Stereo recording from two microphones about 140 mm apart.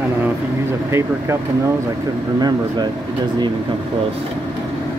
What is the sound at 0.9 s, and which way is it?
Speech, 20° right (ahead or behind).